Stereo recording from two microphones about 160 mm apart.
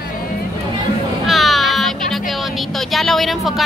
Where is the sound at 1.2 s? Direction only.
Centre (ahead or behind).